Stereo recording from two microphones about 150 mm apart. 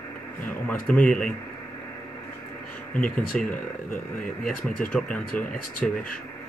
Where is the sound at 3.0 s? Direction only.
65° left (ahead or behind).